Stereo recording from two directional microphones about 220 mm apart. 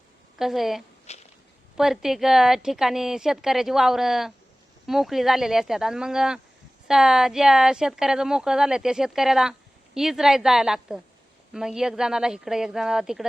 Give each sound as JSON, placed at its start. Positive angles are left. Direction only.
{"t": 0.3, "sound": "speech", "side_deg": 0}
{"t": 1.1, "sound": "walk", "side_deg": 30}
{"t": 1.7, "sound": "speech", "side_deg": 0}